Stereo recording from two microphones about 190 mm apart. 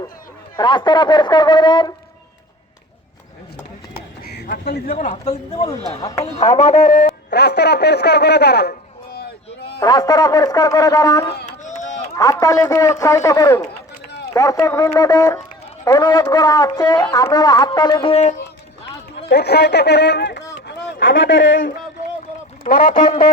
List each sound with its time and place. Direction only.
0.5 s a man's voice: 25° left (ahead or behind)
4.3 s speech: 55° left (ahead or behind)
4.9 s a man's voice: 35° left (ahead or behind)
6.0 s a man's voice: 20° left (ahead or behind)
7.3 s speech: 60° left (ahead or behind)
9.6 s a sound: 60° left (ahead or behind)
9.8 s a man's voice: 20° left (ahead or behind)
11.4 s a sound: 40° left (ahead or behind)
12.1 s a man's voice: 20° left (ahead or behind); by 18.3 s 35° left (ahead or behind)
19.1 s speech: 60° left (ahead or behind)
20.7 s speech: 80° left
22.6 s speech: 45° left (ahead or behind)